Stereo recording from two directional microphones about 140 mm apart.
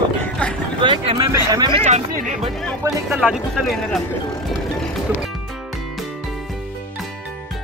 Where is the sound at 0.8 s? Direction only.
35° right (ahead or behind).